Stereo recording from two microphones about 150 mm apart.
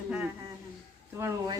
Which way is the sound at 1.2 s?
20° right (ahead or behind).